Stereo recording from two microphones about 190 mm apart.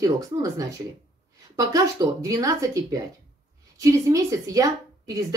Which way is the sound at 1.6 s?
20° right (ahead or behind).